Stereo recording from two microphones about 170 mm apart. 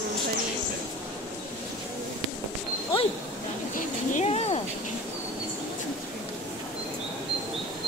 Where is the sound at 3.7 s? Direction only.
45° left (ahead or behind).